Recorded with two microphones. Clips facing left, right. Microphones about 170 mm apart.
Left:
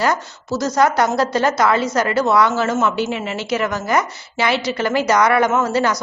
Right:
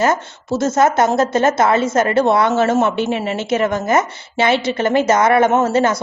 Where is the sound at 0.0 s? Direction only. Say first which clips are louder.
Right 3 dB; 25° right (ahead or behind).